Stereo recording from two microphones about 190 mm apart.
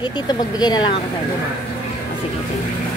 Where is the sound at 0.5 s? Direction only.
20° left (ahead or behind).